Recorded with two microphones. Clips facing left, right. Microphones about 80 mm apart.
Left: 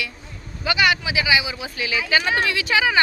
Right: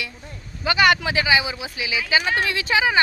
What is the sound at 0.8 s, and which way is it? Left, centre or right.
Speech, right.